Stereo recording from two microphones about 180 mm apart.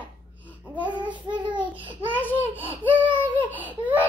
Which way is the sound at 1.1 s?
25° right (ahead or behind).